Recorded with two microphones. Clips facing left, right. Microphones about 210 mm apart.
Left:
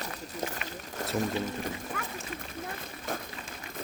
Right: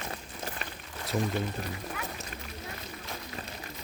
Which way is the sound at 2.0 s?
45° left (ahead or behind).